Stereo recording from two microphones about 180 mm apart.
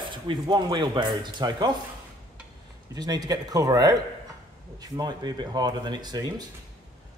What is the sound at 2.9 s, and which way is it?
Speech, 20° right (ahead or behind).